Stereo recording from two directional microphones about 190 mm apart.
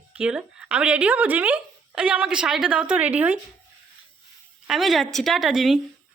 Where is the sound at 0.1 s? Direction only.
5° right (ahead or behind).